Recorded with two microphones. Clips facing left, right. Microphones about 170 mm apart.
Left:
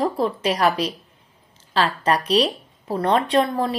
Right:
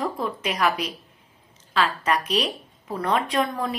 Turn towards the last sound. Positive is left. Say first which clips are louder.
# left 5 dB
turn(degrees=30)  # may be behind; listen again after turning